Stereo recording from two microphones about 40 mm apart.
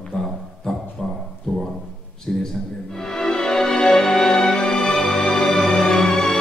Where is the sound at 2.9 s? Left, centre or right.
Centre.